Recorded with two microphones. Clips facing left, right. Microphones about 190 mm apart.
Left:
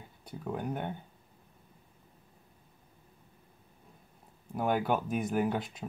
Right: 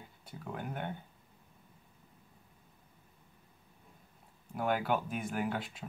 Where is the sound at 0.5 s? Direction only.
20° left (ahead or behind).